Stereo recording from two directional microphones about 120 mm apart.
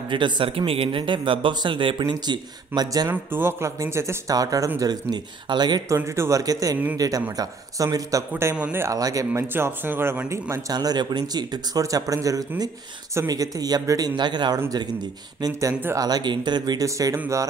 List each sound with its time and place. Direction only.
0.1 s a man's voice: 45° right (ahead or behind)
3.1 s speech: 15° right (ahead or behind); by 5.9 s 35° right (ahead or behind)
5.9 s speech: 20° right (ahead or behind)
8.3 s a man's voice: 15° right (ahead or behind); by 14.6 s 40° right (ahead or behind)
15.7 s a man's voice: 15° right (ahead or behind)
16.0 s speech: 35° right (ahead or behind)